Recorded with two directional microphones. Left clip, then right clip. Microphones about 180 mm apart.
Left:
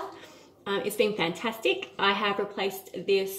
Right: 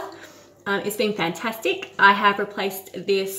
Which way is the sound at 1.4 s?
5° right (ahead or behind).